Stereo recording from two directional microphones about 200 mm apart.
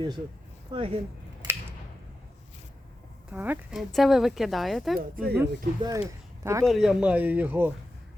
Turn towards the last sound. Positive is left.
turn(degrees=-10)  # may be behind; listen again after turning